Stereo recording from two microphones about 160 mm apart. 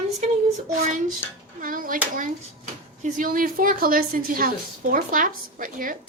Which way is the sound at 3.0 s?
60° right (ahead or behind).